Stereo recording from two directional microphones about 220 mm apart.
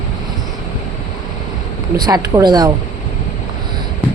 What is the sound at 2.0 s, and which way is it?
Speech, 20° right (ahead or behind).